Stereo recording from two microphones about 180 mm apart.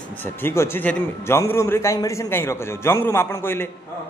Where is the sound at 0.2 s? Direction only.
10° left (ahead or behind).